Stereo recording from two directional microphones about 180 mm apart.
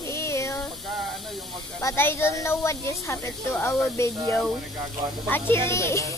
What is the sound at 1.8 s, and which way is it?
Speech, 15° left (ahead or behind).